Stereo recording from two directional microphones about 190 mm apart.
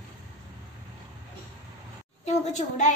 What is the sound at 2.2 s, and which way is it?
Speech, 40° left (ahead or behind).